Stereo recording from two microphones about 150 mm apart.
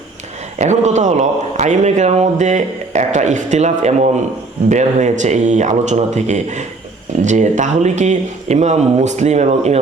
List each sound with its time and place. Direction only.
0.6 s a man's voice: 50° right (ahead or behind)